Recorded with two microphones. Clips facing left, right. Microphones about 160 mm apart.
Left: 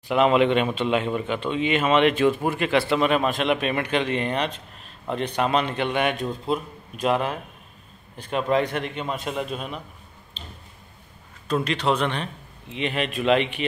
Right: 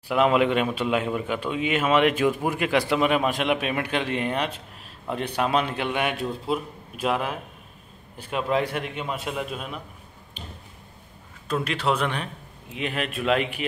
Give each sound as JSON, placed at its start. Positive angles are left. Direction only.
{"t": 0.1, "sound": "a man's voice", "side_deg": -5}
{"t": 10.4, "sound": "squish", "side_deg": -15}
{"t": 11.4, "sound": "a man's voice", "side_deg": -5}